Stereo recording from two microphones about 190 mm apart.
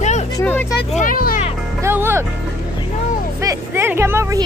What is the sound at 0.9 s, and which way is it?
Music, 45° left (ahead or behind).